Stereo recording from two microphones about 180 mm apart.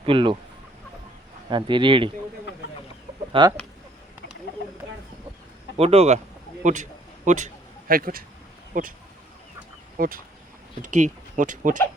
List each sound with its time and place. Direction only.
0.0 s speech: 30° right (ahead or behind)
1.5 s speech: 25° right (ahead or behind)
3.4 s speech: 30° right (ahead or behind)
5.7 s a man's voice: 35° right (ahead or behind)
10.0 s speech: 50° right (ahead or behind)